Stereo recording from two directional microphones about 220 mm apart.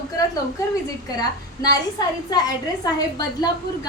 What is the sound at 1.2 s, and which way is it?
A woman's voice, 15° left (ahead or behind).